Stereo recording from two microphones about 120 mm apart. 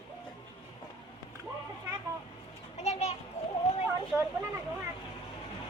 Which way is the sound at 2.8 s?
70° left (ahead or behind).